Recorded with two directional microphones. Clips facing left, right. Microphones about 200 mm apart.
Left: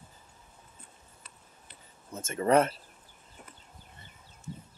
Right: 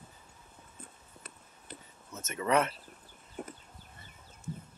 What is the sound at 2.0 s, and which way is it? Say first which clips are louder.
Speech: left 5 dB; 30° left (ahead or behind).